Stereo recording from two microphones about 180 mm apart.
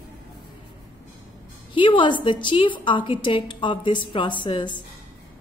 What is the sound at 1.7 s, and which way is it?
A woman's voice, 25° left (ahead or behind).